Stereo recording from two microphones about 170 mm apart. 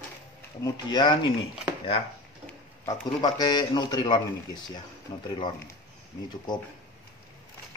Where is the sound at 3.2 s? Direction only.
25° left (ahead or behind).